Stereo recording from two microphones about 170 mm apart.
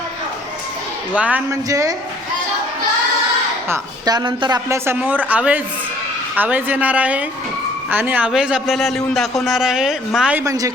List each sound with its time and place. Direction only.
1.1 s speech: 5° right (ahead or behind)
1.5 s speech: 20° right (ahead or behind)
3.7 s speech: 25° right (ahead or behind); by 10.4 s 5° right (ahead or behind)
10.4 s speech: 20° right (ahead or behind)